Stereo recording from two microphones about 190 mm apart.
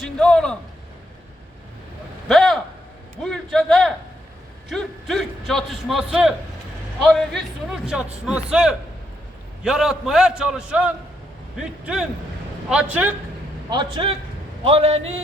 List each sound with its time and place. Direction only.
0.2 s a man's voice: 5° left (ahead or behind)
2.2 s a sound: centre (ahead or behind)
3.2 s a man's voice: centre (ahead or behind)
13.7 s a man's voice: 25° right (ahead or behind)